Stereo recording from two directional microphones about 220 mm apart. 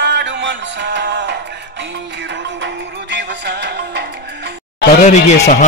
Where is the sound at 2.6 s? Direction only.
50° right (ahead or behind).